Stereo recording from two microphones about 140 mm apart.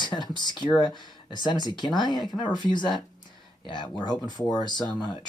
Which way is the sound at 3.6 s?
35° left (ahead or behind).